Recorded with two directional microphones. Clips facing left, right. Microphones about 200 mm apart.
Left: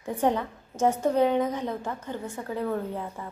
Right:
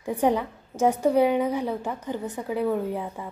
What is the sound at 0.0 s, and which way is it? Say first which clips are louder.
A woman's voice: right 2 dB; 10° right (ahead or behind).